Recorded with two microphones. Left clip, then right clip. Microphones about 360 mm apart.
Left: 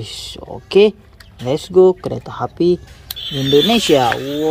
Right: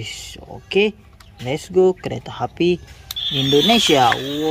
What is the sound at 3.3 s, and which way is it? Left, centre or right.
Speech, centre.